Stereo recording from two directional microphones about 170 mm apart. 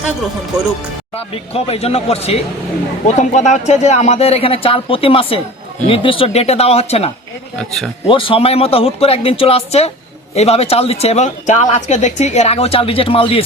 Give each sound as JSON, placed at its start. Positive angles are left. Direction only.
{"t": 1.1, "sound": "speech", "side_deg": 35}
{"t": 7.5, "sound": "speech", "side_deg": 5}
{"t": 8.0, "sound": "speech", "side_deg": 30}